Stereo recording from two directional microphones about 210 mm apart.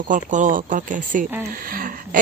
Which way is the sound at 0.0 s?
35° right (ahead or behind).